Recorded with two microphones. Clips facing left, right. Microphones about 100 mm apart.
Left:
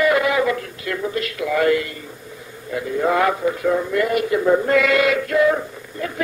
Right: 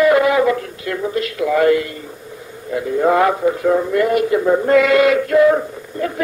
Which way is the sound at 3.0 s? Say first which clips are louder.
Right 4 dB; 30° right (ahead or behind).